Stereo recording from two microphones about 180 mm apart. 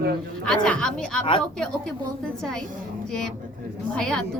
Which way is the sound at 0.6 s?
5° left (ahead or behind).